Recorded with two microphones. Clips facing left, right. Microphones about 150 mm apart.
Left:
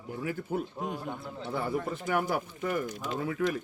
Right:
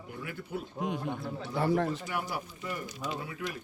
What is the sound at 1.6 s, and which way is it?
Speech, 80° right.